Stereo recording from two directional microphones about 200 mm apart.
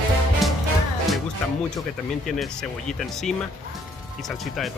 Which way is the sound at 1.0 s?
Centre (ahead or behind).